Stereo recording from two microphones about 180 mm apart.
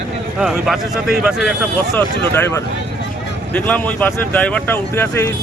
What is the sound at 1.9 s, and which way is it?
Speech, 15° left (ahead or behind).